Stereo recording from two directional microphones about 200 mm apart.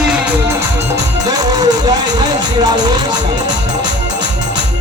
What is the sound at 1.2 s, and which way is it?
Music, 20° right (ahead or behind).